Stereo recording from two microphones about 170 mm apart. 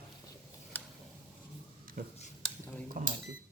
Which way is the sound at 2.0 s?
55° right (ahead or behind).